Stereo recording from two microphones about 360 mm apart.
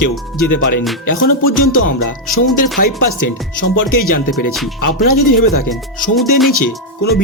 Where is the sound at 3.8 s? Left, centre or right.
Left.